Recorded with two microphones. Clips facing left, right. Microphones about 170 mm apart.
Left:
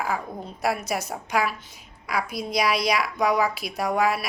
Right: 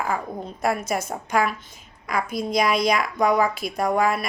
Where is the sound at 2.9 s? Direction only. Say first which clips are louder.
Right 2 dB; centre (ahead or behind).